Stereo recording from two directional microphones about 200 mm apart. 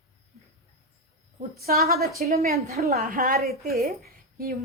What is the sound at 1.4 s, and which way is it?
A woman's voice, 50° right (ahead or behind).